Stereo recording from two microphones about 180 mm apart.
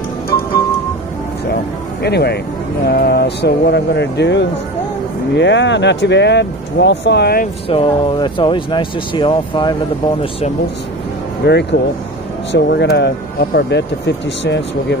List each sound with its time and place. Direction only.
2.0 s speech: 65° left (ahead or behind)
7.6 s speech: 30° left (ahead or behind)
11.4 s speech: 70° left (ahead or behind)